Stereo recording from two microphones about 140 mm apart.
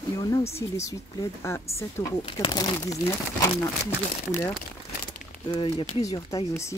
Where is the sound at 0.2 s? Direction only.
20° left (ahead or behind).